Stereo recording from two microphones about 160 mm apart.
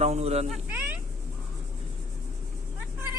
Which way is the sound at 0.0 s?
40° right (ahead or behind).